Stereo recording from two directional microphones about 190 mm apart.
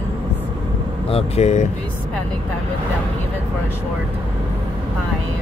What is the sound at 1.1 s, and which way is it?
Speech, 35° left (ahead or behind).